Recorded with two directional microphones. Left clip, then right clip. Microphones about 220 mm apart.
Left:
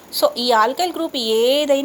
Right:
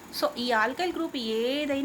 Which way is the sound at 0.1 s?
20° left (ahead or behind).